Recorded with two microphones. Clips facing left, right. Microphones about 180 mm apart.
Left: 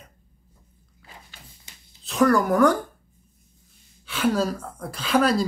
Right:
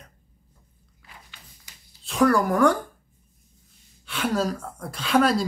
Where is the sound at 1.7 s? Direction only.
25° left (ahead or behind).